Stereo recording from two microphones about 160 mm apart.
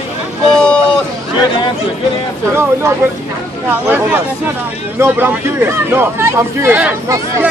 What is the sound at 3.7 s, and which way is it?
Speech, 10° right (ahead or behind).